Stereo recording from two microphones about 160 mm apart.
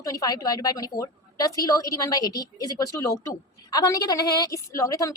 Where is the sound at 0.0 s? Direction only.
20° left (ahead or behind).